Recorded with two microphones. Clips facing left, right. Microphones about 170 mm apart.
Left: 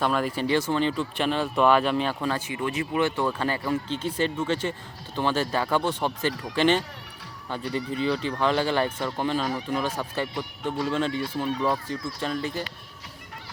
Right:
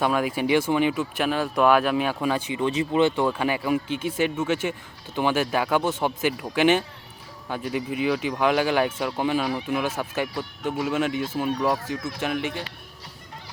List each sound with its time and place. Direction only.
0.0 s speech: 5° right (ahead or behind)
12.4 s speech: 75° right (ahead or behind)